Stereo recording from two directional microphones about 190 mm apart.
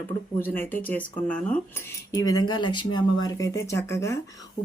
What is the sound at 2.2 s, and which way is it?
Speech, 20° left (ahead or behind).